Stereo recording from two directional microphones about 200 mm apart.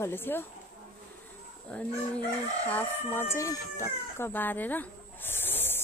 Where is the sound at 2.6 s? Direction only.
10° left (ahead or behind).